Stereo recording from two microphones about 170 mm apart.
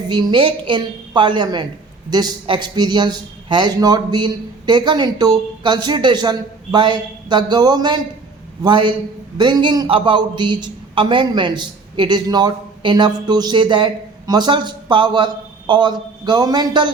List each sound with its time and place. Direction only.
0.1 s a man's voice: 25° right (ahead or behind)